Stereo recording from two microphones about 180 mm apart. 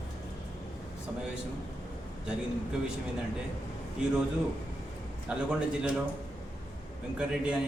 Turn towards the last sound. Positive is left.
turn(degrees=-5)  # may be behind; listen again after turning